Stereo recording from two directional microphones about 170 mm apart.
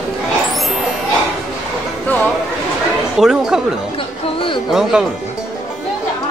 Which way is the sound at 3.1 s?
Centre (ahead or behind).